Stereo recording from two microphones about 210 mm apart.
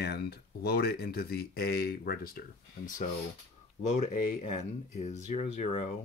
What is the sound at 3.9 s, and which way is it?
Speech, 35° left (ahead or behind).